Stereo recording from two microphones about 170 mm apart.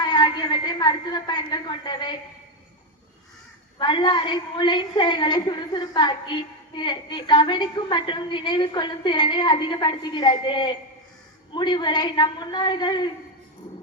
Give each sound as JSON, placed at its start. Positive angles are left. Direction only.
{"t": 0.0, "sound": "a woman's voice", "side_deg": 25}
{"t": 3.8, "sound": "a woman's voice", "side_deg": 25}